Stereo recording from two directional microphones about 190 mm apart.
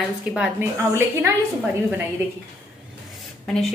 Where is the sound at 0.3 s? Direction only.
10° right (ahead or behind).